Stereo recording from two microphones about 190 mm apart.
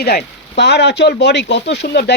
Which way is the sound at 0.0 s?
60° left (ahead or behind).